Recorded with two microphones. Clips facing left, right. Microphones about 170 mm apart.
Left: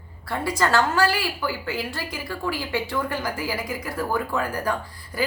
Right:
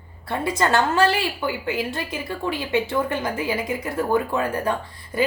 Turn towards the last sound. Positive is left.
turn(degrees=-25)  # may be behind; listen again after turning